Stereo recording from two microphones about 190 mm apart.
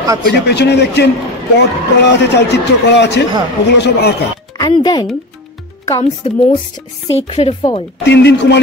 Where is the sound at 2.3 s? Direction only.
65° left (ahead or behind).